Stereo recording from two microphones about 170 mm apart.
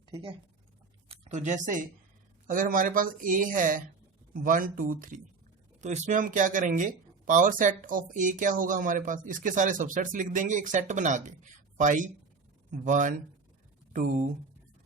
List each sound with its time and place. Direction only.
0.1 s speech: 30° right (ahead or behind); by 14.3 s 50° right (ahead or behind)